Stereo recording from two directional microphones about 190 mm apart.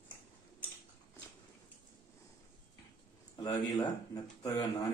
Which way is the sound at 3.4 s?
20° left (ahead or behind).